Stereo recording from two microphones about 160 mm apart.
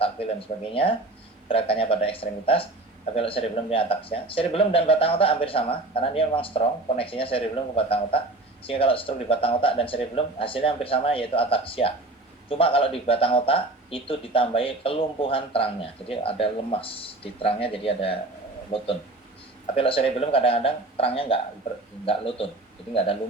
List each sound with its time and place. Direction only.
0.0 s a man's voice: 35° left (ahead or behind)